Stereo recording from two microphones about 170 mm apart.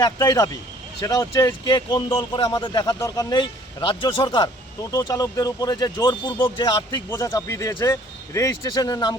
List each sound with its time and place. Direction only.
0.0 s speech: 20° left (ahead or behind)